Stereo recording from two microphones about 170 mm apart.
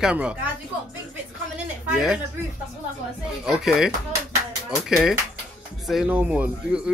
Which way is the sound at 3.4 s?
5° right (ahead or behind).